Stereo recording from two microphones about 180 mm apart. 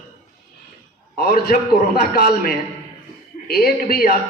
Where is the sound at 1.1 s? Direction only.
55° left (ahead or behind).